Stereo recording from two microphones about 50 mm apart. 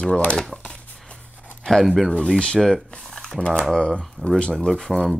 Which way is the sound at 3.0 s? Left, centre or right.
Centre.